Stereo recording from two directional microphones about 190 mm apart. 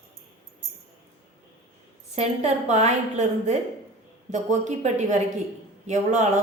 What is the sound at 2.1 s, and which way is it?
A woman's voice, 35° right (ahead or behind).